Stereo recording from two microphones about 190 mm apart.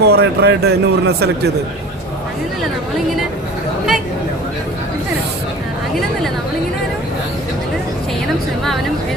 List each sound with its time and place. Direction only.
0.0 s speech: 60° right (ahead or behind)